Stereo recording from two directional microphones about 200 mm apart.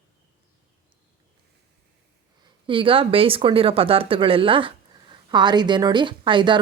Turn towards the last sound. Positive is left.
turn(degrees=-25)  # may be behind; listen again after turning